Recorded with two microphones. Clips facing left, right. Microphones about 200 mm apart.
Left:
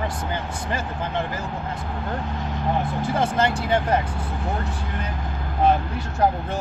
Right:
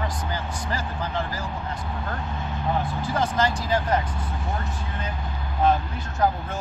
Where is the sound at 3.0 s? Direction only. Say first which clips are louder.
Left 2 dB; 25° left (ahead or behind).